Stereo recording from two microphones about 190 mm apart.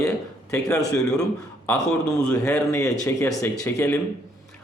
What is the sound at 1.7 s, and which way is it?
Speech, 15° left (ahead or behind).